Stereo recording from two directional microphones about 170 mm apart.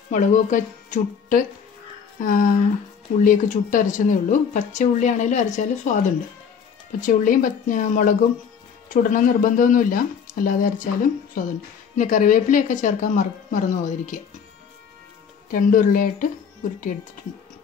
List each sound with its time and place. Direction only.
0.1 s speech: 45° left (ahead or behind)
15.5 s speech: 50° left (ahead or behind)